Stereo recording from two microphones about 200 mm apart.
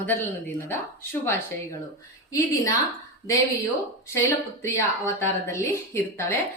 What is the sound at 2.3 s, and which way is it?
Speech, 15° left (ahead or behind).